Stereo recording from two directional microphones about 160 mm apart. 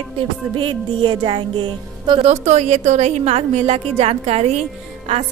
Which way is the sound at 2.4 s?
45° right (ahead or behind).